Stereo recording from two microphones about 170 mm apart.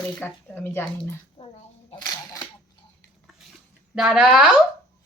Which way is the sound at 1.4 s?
35° left (ahead or behind).